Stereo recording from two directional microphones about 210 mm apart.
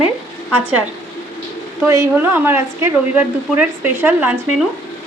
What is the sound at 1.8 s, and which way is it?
Speech, 10° right (ahead or behind).